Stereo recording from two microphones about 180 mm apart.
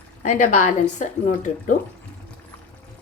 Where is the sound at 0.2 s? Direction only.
45° left (ahead or behind).